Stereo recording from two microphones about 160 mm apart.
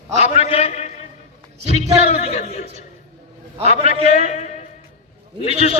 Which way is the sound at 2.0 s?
40° left (ahead or behind).